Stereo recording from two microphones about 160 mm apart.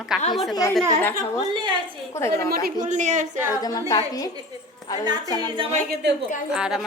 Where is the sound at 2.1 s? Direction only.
15° left (ahead or behind).